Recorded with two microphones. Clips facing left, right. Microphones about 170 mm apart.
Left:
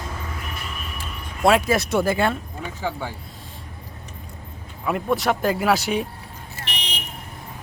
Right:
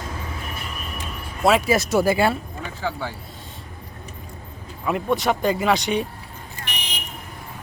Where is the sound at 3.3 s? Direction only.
Centre (ahead or behind).